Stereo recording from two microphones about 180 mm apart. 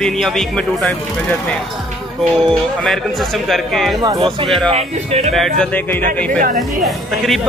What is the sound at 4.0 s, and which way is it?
Speech, 25° right (ahead or behind).